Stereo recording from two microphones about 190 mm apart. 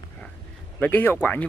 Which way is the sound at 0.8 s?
10° left (ahead or behind).